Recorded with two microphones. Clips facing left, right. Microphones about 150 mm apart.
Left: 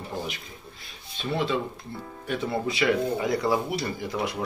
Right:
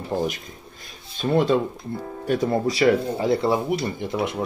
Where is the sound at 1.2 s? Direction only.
45° right (ahead or behind).